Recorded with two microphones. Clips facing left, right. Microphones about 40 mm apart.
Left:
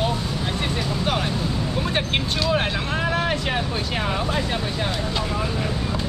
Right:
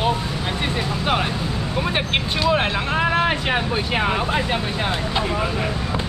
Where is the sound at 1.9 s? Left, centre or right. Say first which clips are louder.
Right 2 dB; centre.